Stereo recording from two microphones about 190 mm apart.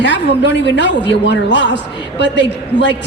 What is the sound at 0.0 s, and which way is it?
Speech, 70° left (ahead or behind).